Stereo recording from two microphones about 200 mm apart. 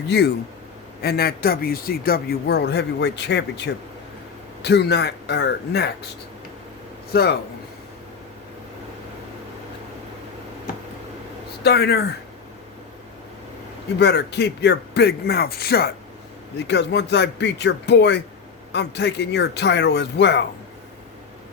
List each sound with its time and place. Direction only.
1.0 s a man's voice: 50° left (ahead or behind)
7.1 s a man's voice: 55° left (ahead or behind)
11.6 s a man's voice: 55° left (ahead or behind)
14.0 s a man's voice: 60° left (ahead or behind)